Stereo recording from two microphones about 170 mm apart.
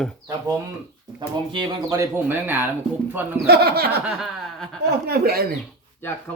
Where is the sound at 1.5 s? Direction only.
20° right (ahead or behind).